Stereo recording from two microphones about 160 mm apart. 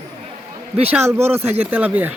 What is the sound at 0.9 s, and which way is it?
Speech, 15° right (ahead or behind).